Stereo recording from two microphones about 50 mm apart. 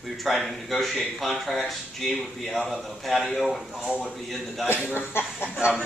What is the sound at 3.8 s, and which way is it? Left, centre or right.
Speech, centre.